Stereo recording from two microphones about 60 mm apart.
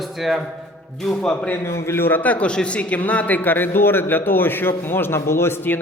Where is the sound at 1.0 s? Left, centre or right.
Centre.